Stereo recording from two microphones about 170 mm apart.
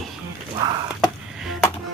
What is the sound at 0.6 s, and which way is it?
Chop, 20° right (ahead or behind).